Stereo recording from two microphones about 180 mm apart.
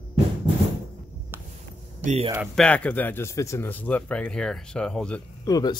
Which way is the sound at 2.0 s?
35° right (ahead or behind).